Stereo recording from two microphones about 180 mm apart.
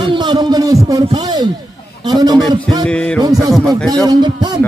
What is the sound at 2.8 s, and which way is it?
Music, 5° left (ahead or behind).